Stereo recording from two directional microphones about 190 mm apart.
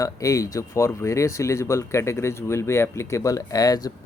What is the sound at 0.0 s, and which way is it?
Speech, 15° left (ahead or behind).